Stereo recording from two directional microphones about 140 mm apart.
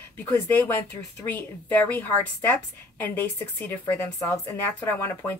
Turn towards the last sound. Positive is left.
turn(degrees=15)  # may be behind; listen again after turning